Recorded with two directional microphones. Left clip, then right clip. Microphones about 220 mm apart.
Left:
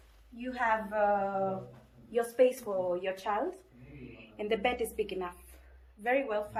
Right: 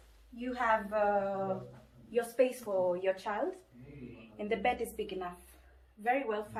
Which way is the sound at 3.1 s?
40° left (ahead or behind).